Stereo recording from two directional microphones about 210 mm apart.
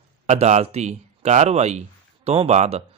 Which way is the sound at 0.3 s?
35° right (ahead or behind).